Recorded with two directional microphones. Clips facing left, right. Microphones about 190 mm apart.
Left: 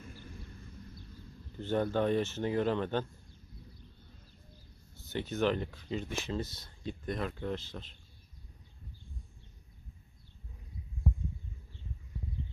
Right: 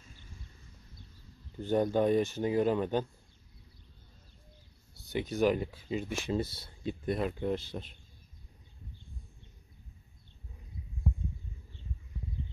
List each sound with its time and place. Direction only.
0.0 s a sound: 60° left (ahead or behind)
1.6 s speech: 15° right (ahead or behind)
4.9 s speech: 15° right (ahead or behind)